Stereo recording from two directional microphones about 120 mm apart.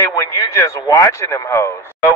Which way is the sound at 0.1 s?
30° left (ahead or behind).